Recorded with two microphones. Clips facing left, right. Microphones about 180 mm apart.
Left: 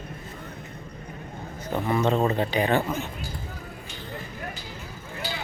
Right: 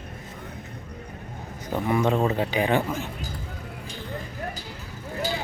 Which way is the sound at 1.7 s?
10° right (ahead or behind).